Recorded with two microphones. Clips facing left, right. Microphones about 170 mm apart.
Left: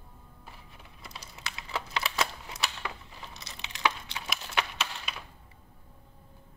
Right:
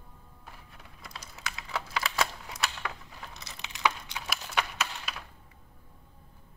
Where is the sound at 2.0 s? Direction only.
Centre (ahead or behind).